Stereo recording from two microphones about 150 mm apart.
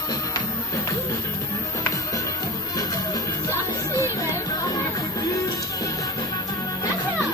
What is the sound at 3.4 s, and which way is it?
Music, 20° left (ahead or behind).